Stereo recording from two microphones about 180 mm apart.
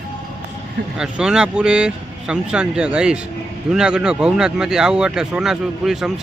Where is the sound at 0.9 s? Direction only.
5° right (ahead or behind).